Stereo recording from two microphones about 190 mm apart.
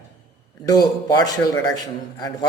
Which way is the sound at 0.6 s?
20° left (ahead or behind).